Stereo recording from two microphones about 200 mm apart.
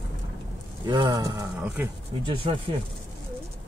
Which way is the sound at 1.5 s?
5° right (ahead or behind).